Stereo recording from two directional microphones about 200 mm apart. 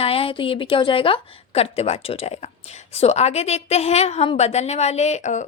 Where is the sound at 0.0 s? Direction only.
30° left (ahead or behind).